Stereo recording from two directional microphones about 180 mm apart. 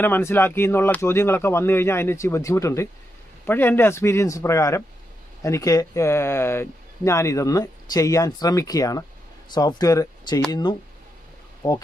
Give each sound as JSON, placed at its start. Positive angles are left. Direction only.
{"t": 0.0, "sound": "speech", "side_deg": 10}